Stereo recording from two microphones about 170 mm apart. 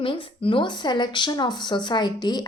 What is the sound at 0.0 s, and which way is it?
A woman's voice, 30° left (ahead or behind).